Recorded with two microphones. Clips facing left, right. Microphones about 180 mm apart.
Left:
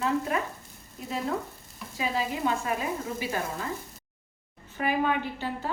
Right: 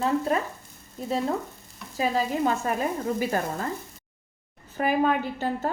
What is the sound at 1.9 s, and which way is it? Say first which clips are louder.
A woman's voice: right 5 dB; 40° right (ahead or behind).